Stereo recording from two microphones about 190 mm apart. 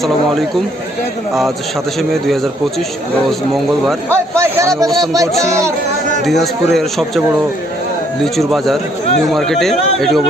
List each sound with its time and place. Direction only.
1.3 s a man's voice: centre (ahead or behind)
4.1 s a man's voice: 15° right (ahead or behind)
6.2 s a man's voice: centre (ahead or behind)
8.2 s a man's voice: centre (ahead or behind)